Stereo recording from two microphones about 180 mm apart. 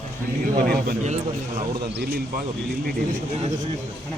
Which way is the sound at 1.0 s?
40° right (ahead or behind).